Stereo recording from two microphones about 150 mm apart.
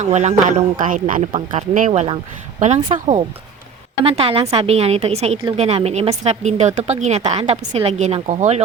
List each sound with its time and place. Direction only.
0.0 s speech: 50° right (ahead or behind)
1.9 s speech: 45° right (ahead or behind)
4.0 s speech: 40° right (ahead or behind)